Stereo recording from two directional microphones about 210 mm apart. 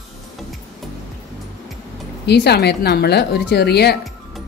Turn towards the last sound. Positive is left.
turn(degrees=50)  # may be behind; listen again after turning